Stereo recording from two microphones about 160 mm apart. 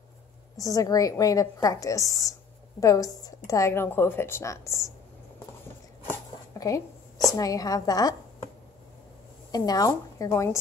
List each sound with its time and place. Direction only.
0.6 s a woman's voice: 20° left (ahead or behind)
6.6 s speech: 20° left (ahead or behind)
9.5 s a woman's voice: 25° left (ahead or behind)